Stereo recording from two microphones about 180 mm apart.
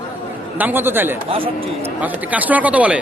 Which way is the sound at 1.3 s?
30° right (ahead or behind).